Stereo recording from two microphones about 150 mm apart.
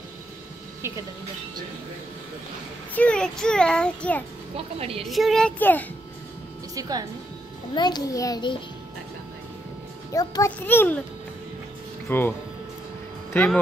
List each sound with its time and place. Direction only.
2.9 s a child's voice: 10° left (ahead or behind)
4.6 s a woman's voice: 40° right (ahead or behind)
5.0 s speech: centre (ahead or behind)
5.6 s a child's voice: 10° left (ahead or behind)
6.7 s a woman's voice: 25° right (ahead or behind)
7.7 s a child's voice: 30° left (ahead or behind)
10.1 s a child's voice: 25° left (ahead or behind)
12.1 s a child's voice: 15° left (ahead or behind)